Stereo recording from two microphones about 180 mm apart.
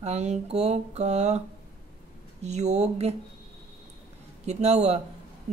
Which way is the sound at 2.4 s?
40° right (ahead or behind).